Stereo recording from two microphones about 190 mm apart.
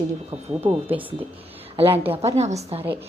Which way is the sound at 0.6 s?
25° right (ahead or behind).